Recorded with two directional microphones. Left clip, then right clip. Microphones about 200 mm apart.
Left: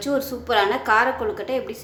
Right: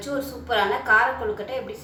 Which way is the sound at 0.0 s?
50° left (ahead or behind).